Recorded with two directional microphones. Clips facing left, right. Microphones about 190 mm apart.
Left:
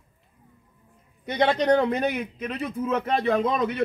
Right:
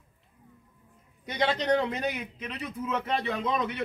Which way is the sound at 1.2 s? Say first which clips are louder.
Left 6 dB; 60° left (ahead or behind).